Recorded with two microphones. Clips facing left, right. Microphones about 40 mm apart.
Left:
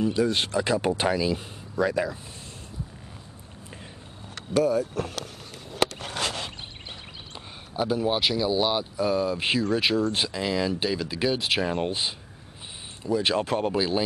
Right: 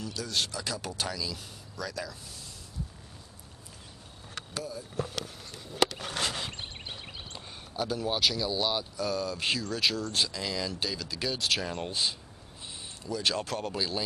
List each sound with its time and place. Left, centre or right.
0.0 s speech: left
4.6 s speech: left
7.3 s speech: centre